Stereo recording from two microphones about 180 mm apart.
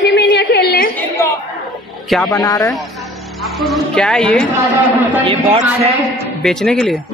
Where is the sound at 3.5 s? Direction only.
Centre (ahead or behind).